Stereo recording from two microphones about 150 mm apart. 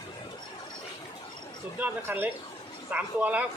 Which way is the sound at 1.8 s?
10° right (ahead or behind).